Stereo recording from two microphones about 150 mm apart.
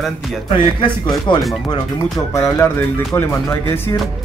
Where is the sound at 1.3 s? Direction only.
30° left (ahead or behind).